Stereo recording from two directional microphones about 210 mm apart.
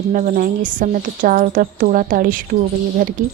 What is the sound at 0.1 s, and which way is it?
A woman's voice, 40° right (ahead or behind).